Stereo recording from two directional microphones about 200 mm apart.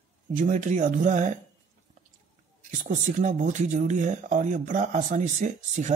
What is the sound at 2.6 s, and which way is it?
Speech, 40° right (ahead or behind).